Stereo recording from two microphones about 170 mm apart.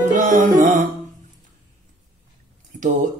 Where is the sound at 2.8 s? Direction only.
45° right (ahead or behind).